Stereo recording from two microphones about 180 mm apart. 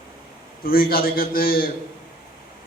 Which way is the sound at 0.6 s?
55° left (ahead or behind).